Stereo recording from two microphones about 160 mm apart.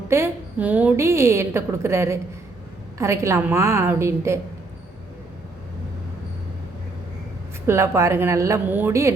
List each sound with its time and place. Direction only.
0.1 s a woman's voice: 15° right (ahead or behind)
7.7 s a woman's voice: 15° right (ahead or behind)